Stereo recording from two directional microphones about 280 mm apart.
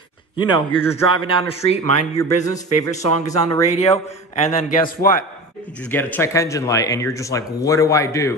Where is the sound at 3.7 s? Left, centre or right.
Left.